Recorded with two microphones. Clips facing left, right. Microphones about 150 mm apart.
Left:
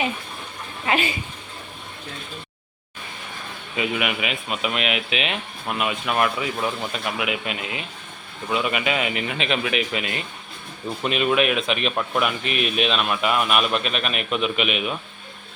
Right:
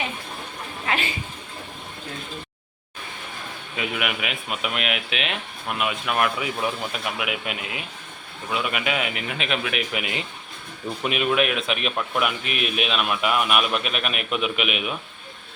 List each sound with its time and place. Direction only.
0.9 s a woman's voice: 10° left (ahead or behind)
3.8 s speech: centre (ahead or behind)
10.0 s speech: 15° right (ahead or behind)
11.0 s speech: 5° right (ahead or behind)